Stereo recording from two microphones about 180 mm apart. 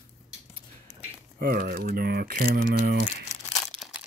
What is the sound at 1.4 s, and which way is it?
Speech, 55° right (ahead or behind).